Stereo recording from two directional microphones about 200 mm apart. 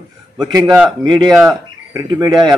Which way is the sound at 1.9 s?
20° right (ahead or behind).